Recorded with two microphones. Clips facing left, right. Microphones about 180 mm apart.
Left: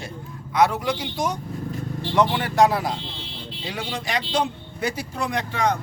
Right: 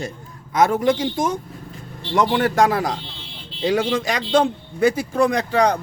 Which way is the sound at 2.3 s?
45° right (ahead or behind).